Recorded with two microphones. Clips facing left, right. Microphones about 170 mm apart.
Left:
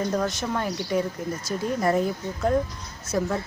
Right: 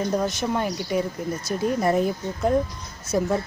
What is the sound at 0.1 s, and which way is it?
Speech, 15° right (ahead or behind).